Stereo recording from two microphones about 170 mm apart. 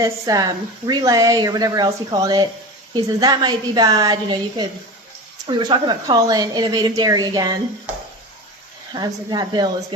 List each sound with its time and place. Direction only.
0.0 s speech: 20° right (ahead or behind)
8.9 s speech: 25° right (ahead or behind)